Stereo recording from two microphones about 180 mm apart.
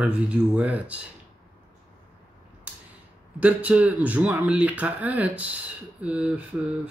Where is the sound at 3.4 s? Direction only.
10° right (ahead or behind).